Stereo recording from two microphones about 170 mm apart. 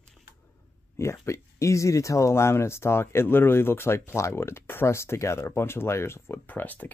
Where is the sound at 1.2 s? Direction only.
15° left (ahead or behind).